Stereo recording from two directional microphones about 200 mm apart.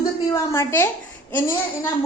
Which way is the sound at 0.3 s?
10° left (ahead or behind).